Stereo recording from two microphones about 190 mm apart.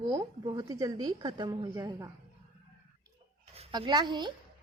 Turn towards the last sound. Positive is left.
turn(degrees=-25)  # may be behind; listen again after turning